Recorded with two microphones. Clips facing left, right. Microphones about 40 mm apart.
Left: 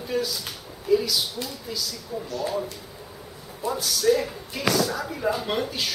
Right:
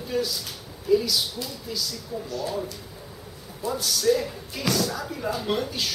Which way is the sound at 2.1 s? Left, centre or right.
Left.